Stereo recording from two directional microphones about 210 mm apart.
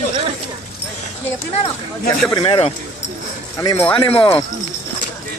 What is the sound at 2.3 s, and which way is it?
Speech, 25° left (ahead or behind).